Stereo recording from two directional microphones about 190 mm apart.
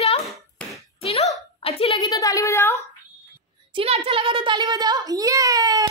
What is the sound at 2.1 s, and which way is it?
Speech, 15° left (ahead or behind).